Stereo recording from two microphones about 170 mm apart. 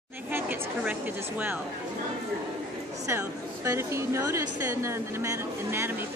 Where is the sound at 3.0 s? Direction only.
15° right (ahead or behind).